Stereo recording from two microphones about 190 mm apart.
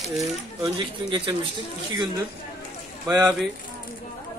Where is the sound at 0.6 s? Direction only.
25° right (ahead or behind).